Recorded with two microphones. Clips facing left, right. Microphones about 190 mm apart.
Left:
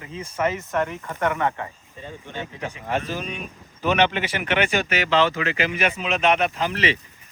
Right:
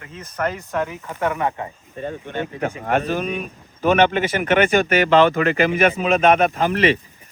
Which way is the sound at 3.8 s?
50° right (ahead or behind).